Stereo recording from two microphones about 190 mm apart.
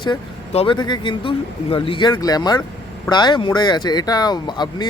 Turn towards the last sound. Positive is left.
turn(degrees=20)  # may be behind; listen again after turning